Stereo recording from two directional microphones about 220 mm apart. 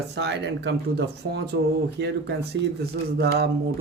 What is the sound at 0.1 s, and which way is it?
Speech, 50° right (ahead or behind).